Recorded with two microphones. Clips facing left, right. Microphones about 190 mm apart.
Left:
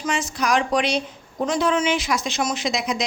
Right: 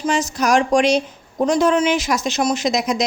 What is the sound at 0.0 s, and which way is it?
Speech, 40° right (ahead or behind).